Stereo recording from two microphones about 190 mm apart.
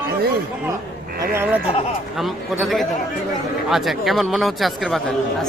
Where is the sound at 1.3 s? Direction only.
10° right (ahead or behind).